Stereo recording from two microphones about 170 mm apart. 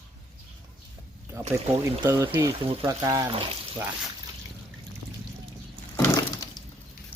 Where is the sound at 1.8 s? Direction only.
15° right (ahead or behind).